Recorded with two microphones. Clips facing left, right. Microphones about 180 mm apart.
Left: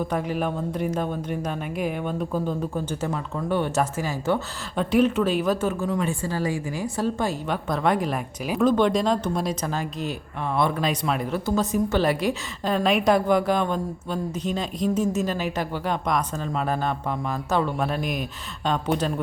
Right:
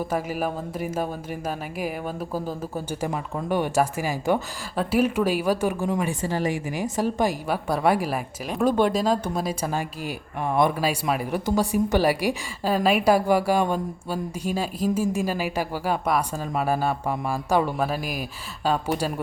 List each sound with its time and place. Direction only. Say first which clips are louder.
0.1 s speech: left 1 dB; 5° right (ahead or behind)